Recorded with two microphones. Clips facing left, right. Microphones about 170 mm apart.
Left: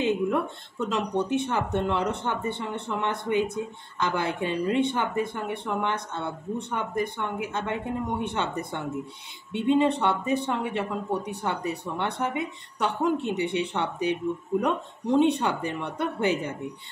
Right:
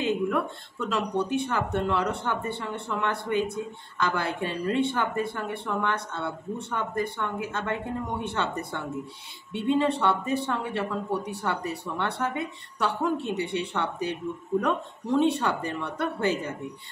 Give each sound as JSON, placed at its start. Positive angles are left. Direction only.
{"t": 0.0, "sound": "speech", "side_deg": 20}